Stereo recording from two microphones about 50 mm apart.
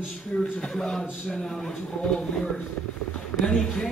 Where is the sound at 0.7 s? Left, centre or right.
Centre.